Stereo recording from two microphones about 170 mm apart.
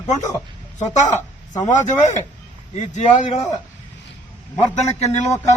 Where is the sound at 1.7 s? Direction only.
45° left (ahead or behind).